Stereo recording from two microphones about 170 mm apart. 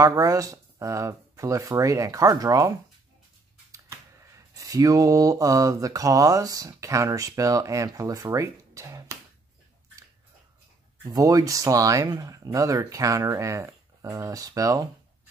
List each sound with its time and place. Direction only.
0.0 s speech: 20° right (ahead or behind)
3.7 s speech: 20° right (ahead or behind)
11.1 s speech: 20° right (ahead or behind)